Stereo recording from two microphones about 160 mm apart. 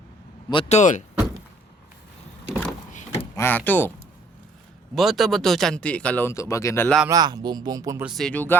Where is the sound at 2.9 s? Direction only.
50° left (ahead or behind).